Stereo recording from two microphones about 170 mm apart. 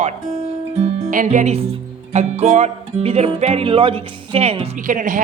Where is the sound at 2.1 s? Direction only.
40° right (ahead or behind).